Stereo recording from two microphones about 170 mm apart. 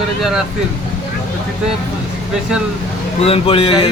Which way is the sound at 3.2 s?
35° left (ahead or behind).